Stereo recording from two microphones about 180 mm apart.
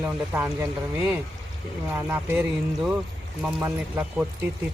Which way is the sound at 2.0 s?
10° right (ahead or behind).